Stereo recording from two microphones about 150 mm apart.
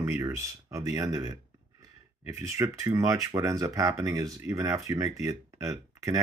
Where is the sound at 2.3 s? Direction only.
20° right (ahead or behind).